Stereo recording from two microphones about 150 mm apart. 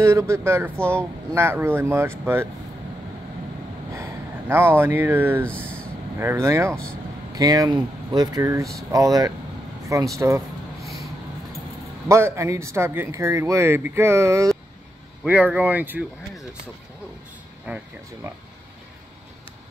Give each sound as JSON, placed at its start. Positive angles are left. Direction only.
{"t": 0.0, "sound": "speech", "side_deg": -20}
{"t": 3.9, "sound": "speech", "side_deg": -15}
{"t": 12.1, "sound": "speech", "side_deg": -15}
{"t": 17.7, "sound": "speech", "side_deg": -10}